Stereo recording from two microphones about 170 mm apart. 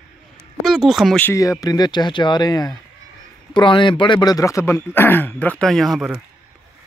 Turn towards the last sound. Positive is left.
turn(degrees=0)  # may be behind; listen again after turning